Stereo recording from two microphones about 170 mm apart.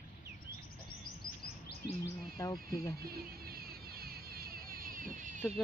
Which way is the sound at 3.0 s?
65° right (ahead or behind).